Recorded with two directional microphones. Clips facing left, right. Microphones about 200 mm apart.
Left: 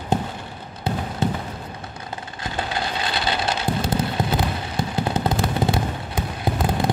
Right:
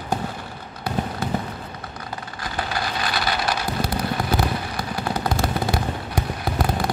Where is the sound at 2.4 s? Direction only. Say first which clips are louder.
Left 1 dB; 25° left (ahead or behind).